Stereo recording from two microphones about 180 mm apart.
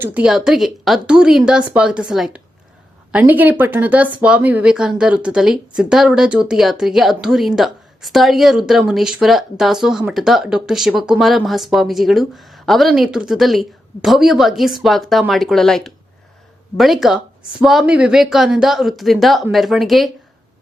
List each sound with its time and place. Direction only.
0.0 s speech: 5° right (ahead or behind)